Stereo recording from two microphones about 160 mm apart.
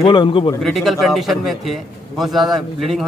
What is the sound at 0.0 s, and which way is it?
Speech, 30° left (ahead or behind).